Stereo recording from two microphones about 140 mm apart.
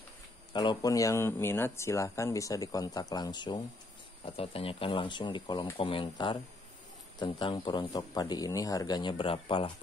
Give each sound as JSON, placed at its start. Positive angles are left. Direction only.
{"t": 0.5, "sound": "speech", "side_deg": 30}